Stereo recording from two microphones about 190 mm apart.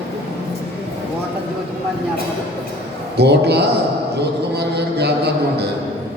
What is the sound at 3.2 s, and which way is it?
Speech, 60° right (ahead or behind).